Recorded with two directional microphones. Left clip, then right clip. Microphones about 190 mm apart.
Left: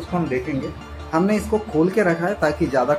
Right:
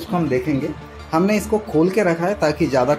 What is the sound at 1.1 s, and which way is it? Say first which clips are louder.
Speech: right 2 dB; 20° right (ahead or behind).